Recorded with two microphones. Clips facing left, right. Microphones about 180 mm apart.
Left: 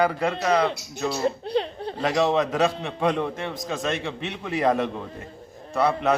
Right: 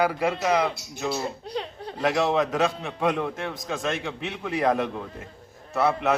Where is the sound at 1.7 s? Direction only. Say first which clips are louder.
Left 5 dB; 30° left (ahead or behind).